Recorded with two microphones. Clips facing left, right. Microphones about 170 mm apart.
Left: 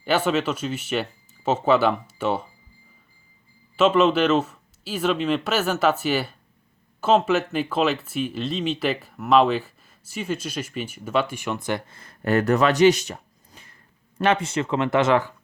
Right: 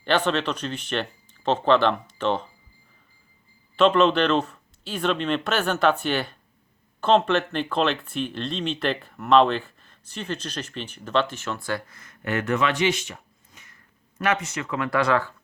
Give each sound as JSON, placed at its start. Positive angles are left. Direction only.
{"t": 0.0, "sound": "speech", "side_deg": 5}
{"t": 3.8, "sound": "speech", "side_deg": 5}